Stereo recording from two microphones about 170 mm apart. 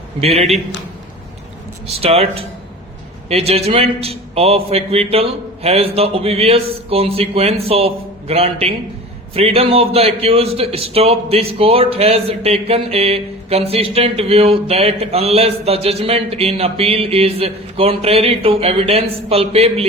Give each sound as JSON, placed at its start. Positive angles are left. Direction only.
{"t": 0.2, "sound": "a man's voice", "side_deg": -35}
{"t": 1.9, "sound": "a man's voice", "side_deg": -35}